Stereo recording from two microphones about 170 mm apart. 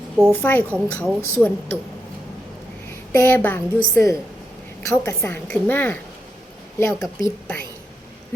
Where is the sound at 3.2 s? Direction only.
10° left (ahead or behind).